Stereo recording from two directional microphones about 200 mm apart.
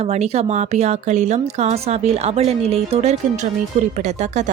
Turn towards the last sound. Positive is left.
turn(degrees=-35)  # may be behind; listen again after turning